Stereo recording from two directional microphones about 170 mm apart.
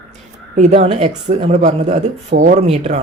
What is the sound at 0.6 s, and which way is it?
Speech, 40° right (ahead or behind).